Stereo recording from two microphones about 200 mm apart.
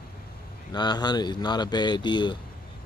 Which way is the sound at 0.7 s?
20° left (ahead or behind).